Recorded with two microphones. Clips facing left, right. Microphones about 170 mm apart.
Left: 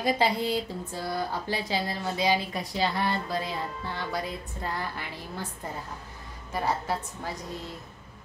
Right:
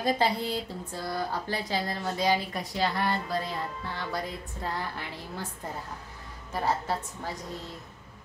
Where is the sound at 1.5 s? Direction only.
10° left (ahead or behind).